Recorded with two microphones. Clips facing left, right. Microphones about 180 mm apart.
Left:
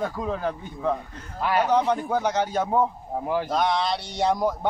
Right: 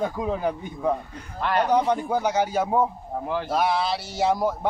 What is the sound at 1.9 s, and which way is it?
A man's voice, 10° right (ahead or behind).